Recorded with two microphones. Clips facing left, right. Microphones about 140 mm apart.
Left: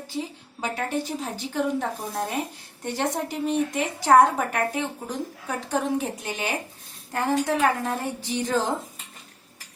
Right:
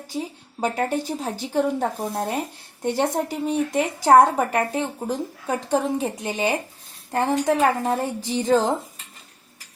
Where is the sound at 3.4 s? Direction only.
35° right (ahead or behind).